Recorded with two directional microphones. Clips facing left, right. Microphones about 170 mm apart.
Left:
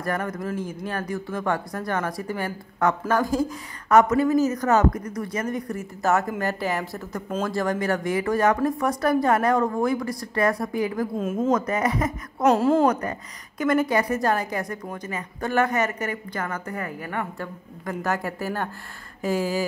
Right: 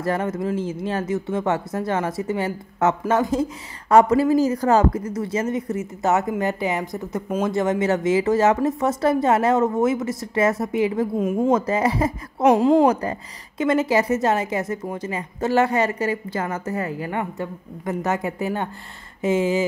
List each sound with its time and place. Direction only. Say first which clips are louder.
0.0 s a woman's voice: right 4 dB; 25° right (ahead or behind)
11.1 s a woman's voice: right 4 dB; 15° right (ahead or behind)
11.5 s a woman's voice: right 3 dB; 30° right (ahead or behind)
12.4 s a woman's voice: right 3 dB; 15° right (ahead or behind)
12.8 s a woman's voice: right 3 dB; 30° right (ahead or behind)